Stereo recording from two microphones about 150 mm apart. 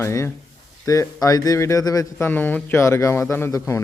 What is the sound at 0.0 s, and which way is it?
Speech, 20° left (ahead or behind).